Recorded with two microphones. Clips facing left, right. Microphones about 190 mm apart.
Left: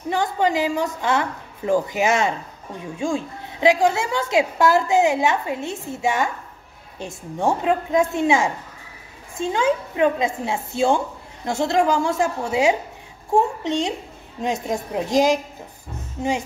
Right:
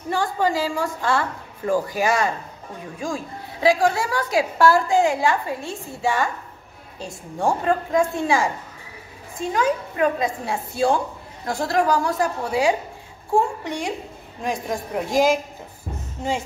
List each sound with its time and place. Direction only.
0.1 s a woman's voice: 20° left (ahead or behind)
16.2 s music: 15° left (ahead or behind)